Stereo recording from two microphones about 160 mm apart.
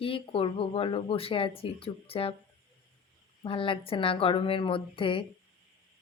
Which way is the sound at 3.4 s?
35° left (ahead or behind).